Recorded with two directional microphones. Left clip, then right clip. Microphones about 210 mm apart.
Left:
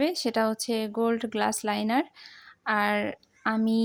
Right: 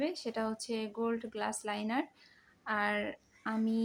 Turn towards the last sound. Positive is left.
turn(degrees=30)  # may be behind; listen again after turning